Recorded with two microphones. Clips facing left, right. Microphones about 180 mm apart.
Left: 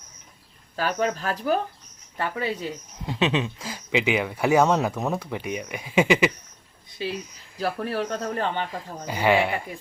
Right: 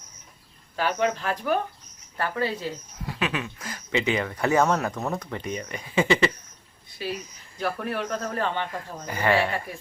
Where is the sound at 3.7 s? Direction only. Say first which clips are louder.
Left 1 dB; 10° left (ahead or behind).